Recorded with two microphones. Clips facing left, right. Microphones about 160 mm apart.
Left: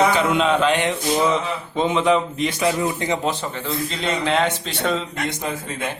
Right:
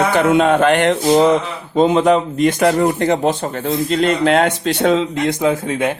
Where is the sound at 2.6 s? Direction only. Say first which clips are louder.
Right 5 dB; 60° right (ahead or behind).